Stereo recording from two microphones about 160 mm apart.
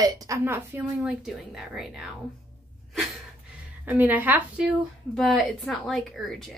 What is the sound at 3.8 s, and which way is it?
Speech, 10° right (ahead or behind).